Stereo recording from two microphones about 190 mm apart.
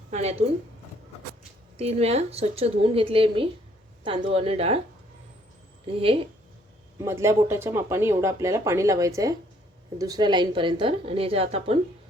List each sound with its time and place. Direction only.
0.1 s a woman's voice: 35° right (ahead or behind)
1.7 s a woman's voice: 30° right (ahead or behind)
5.8 s a woman's voice: 30° right (ahead or behind)
7.0 s a woman's voice: 15° right (ahead or behind); by 11.8 s 30° right (ahead or behind)